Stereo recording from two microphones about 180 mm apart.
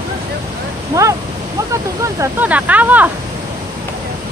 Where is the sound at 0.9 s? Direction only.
15° right (ahead or behind).